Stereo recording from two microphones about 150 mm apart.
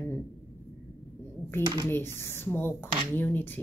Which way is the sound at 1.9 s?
15° left (ahead or behind).